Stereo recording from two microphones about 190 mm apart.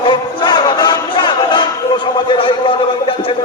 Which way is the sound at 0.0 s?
25° left (ahead or behind).